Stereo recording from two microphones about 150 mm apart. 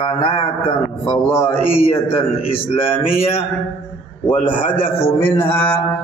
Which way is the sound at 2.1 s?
40° left (ahead or behind).